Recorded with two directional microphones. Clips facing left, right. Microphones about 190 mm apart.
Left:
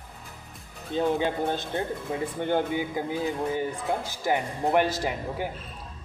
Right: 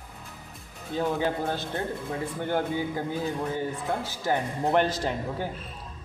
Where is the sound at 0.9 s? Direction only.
20° left (ahead or behind).